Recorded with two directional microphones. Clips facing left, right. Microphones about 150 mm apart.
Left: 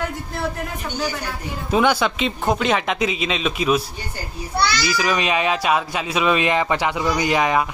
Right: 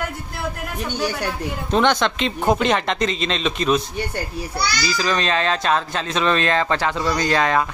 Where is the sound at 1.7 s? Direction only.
5° left (ahead or behind).